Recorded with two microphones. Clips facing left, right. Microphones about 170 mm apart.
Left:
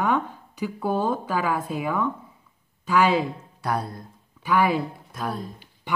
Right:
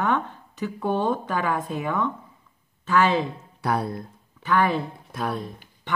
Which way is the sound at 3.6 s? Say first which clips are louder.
Right 2 dB; 60° right (ahead or behind).